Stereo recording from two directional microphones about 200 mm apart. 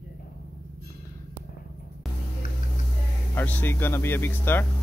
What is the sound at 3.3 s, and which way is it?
Speech, 10° left (ahead or behind).